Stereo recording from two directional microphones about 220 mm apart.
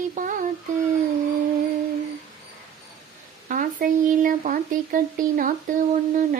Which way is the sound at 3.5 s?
35° right (ahead or behind).